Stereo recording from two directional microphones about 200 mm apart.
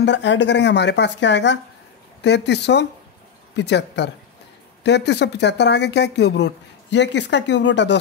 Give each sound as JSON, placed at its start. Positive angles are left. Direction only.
{"t": 0.0, "sound": "speech", "side_deg": 60}